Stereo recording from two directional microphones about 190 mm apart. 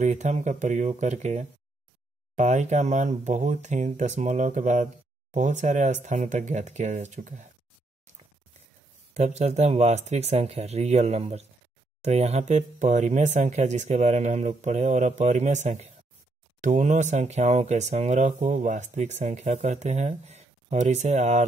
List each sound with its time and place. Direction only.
0.0 s speech: 40° right (ahead or behind)
9.1 s speech: 35° right (ahead or behind)